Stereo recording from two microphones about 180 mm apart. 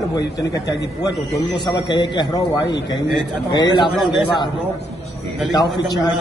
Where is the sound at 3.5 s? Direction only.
25° left (ahead or behind).